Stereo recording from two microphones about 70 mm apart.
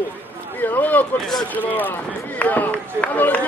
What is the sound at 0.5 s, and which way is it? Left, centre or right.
Speech, left.